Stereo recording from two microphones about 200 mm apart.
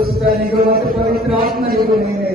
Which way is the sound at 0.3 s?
45° right (ahead or behind).